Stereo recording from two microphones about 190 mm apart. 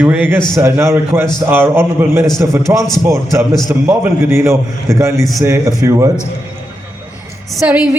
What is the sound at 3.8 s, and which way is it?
A woman's voice, 10° right (ahead or behind).